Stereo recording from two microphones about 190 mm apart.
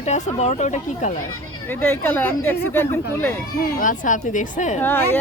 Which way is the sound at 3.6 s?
45° left (ahead or behind).